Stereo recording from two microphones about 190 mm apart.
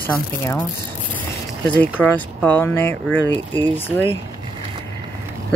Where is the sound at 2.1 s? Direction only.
10° left (ahead or behind).